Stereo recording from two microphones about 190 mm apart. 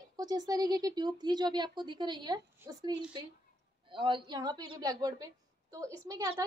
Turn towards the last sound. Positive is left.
turn(degrees=-15)  # may be behind; listen again after turning